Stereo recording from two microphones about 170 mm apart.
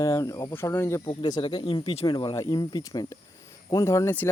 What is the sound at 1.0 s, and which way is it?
Speech, 30° left (ahead or behind).